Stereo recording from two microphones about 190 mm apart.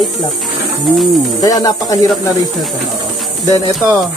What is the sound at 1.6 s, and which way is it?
Music, 20° left (ahead or behind).